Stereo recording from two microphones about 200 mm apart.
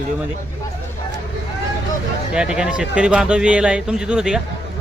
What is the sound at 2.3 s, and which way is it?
A man's voice, 5° right (ahead or behind).